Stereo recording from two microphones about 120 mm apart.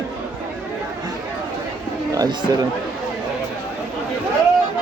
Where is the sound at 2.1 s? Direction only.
30° right (ahead or behind).